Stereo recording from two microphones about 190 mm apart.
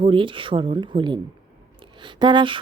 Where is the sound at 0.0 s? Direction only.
25° right (ahead or behind).